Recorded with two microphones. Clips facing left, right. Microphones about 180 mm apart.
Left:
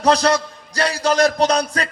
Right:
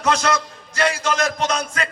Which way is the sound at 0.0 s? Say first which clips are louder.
Left 4 dB; 35° left (ahead or behind).